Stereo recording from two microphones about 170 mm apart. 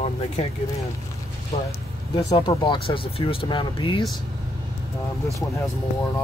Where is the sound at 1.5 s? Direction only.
35° left (ahead or behind).